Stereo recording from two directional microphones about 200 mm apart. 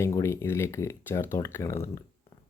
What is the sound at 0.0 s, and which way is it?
Speech, 15° left (ahead or behind).